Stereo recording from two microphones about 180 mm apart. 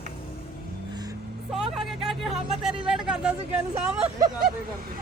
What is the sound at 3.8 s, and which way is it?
Speech, 5° right (ahead or behind).